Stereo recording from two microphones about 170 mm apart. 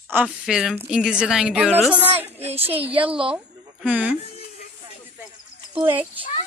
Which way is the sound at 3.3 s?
10° right (ahead or behind).